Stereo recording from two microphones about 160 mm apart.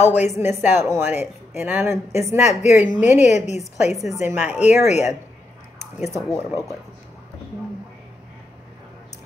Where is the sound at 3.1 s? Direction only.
45° left (ahead or behind).